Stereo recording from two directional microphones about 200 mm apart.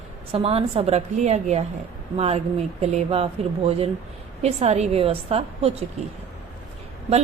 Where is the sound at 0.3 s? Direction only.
30° right (ahead or behind).